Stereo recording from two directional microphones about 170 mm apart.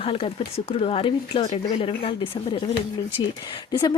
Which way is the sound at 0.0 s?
35° left (ahead or behind).